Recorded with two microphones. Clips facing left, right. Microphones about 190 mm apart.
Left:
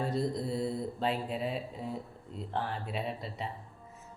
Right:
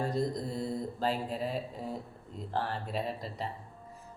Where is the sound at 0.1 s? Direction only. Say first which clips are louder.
Even; centre (ahead or behind).